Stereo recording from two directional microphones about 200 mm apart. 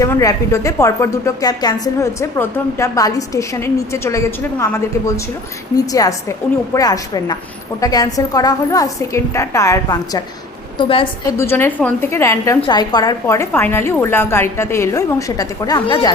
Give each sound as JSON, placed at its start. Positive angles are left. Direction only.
{"t": 0.0, "sound": "a woman's voice", "side_deg": 15}
{"t": 11.3, "sound": "a woman's voice", "side_deg": 10}